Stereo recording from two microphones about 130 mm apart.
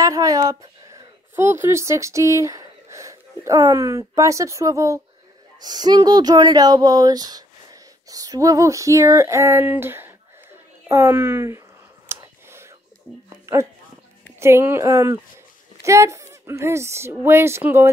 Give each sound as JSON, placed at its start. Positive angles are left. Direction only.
{"t": 0.0, "sound": "a woman's voice", "side_deg": -25}
{"t": 12.1, "sound": "whispering", "side_deg": -20}
{"t": 13.5, "sound": "speech", "side_deg": -20}